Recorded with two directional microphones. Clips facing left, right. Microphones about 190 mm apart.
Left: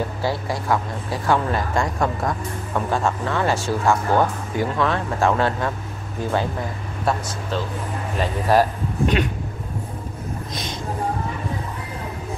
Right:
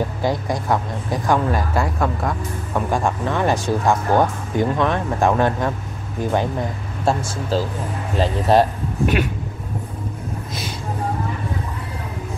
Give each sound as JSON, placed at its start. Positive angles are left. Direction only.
{"t": 0.2, "sound": "speech", "side_deg": -20}
{"t": 2.9, "sound": "speech", "side_deg": -15}
{"t": 7.1, "sound": "speech", "side_deg": -30}